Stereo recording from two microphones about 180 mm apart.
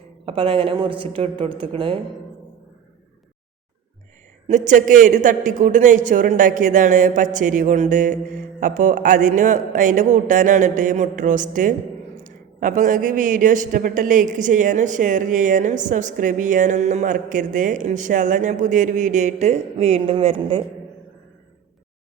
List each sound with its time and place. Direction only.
0.3 s a woman's voice: 30° right (ahead or behind)
4.4 s a man's voice: 45° right (ahead or behind)